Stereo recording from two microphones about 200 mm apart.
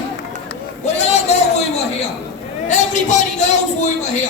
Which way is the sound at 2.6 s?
35° left (ahead or behind).